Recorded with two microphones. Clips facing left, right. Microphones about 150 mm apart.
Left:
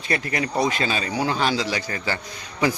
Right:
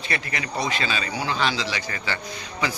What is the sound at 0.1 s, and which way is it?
A man's voice, 40° left (ahead or behind).